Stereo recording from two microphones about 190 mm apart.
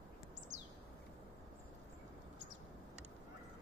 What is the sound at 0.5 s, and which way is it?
Bird, 40° right (ahead or behind).